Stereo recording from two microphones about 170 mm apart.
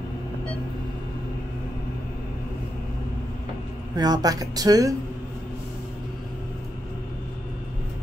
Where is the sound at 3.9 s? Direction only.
25° right (ahead or behind).